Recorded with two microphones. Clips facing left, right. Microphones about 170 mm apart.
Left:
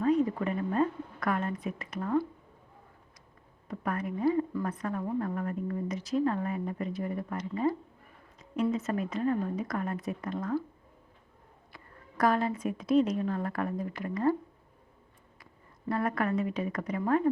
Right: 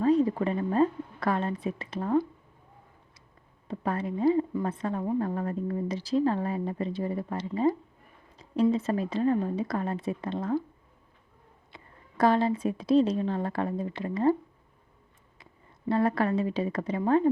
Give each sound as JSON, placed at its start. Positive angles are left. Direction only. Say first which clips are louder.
{"t": 0.0, "sound": "a woman's voice", "louder": "right 3 dB", "side_deg": -30}
{"t": 3.7, "sound": "a woman's voice", "louder": "right 3 dB", "side_deg": -25}
{"t": 8.7, "sound": "a woman's voice", "louder": "right 3 dB", "side_deg": -30}
{"t": 11.7, "sound": "a woman's voice", "louder": "even", "side_deg": -25}
{"t": 15.9, "sound": "a woman's voice", "louder": "right 4 dB", "side_deg": -30}